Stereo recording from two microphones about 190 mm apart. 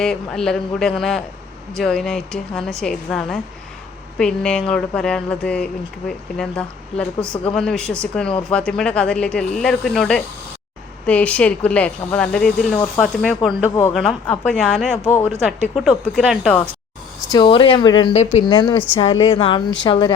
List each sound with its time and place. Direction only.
0.0 s speech: 5° left (ahead or behind)
17.2 s speech: 25° left (ahead or behind)
18.1 s speech: 35° left (ahead or behind)